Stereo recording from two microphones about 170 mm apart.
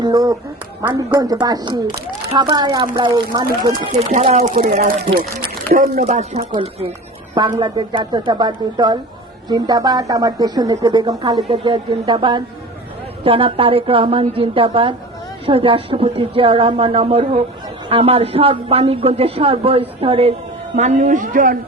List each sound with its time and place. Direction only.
0.0 s a woman's voice: 20° right (ahead or behind)
4.3 s a man's voice: 40° right (ahead or behind)
7.3 s a woman's voice: 25° right (ahead or behind)
11.4 s a woman's voice: 35° right (ahead or behind)
20.7 s speech: 45° right (ahead or behind)